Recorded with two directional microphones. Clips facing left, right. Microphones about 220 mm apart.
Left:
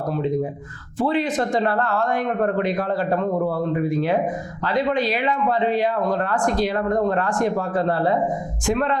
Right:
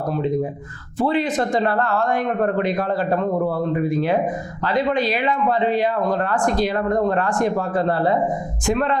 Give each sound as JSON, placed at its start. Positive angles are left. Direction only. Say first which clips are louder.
{"t": 1.0, "sound": "speech", "louder": "right 1 dB", "side_deg": -20}